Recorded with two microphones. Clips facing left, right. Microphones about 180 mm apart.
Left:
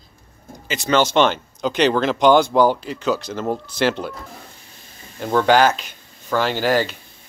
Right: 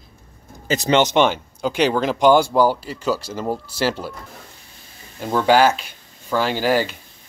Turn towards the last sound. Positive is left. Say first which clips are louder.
# even
turn(degrees=-10)  # may be behind; listen again after turning